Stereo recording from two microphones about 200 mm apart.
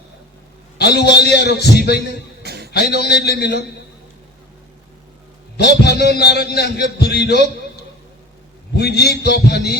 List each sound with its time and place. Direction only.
0.8 s a man's voice: 55° left (ahead or behind)
2.4 s a sound: 55° right (ahead or behind)
2.7 s a man's voice: 55° left (ahead or behind)
5.5 s a man's voice: 55° left (ahead or behind)
8.7 s a man's voice: 55° left (ahead or behind)